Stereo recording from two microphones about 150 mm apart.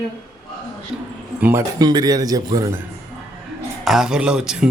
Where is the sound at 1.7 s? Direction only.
25° right (ahead or behind).